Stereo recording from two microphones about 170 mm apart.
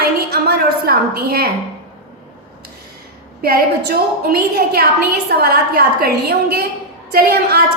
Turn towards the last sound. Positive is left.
turn(degrees=-65)  # may be behind; listen again after turning